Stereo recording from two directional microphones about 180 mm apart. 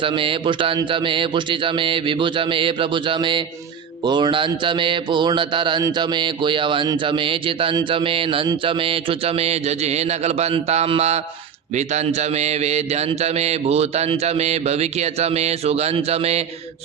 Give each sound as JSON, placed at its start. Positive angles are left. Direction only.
{"t": 0.0, "sound": "mantra", "side_deg": -30}
{"t": 11.7, "sound": "a man's voice", "side_deg": -40}